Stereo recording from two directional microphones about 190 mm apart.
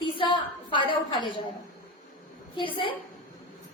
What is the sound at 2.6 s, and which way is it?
Speech, 25° left (ahead or behind).